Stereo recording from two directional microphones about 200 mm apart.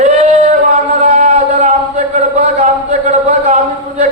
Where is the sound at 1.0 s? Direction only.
35° right (ahead or behind).